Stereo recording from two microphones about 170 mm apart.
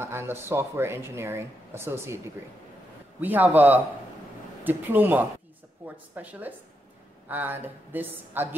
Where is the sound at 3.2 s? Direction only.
10° right (ahead or behind).